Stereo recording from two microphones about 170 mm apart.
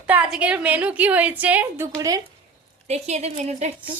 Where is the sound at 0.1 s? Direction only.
5° right (ahead or behind).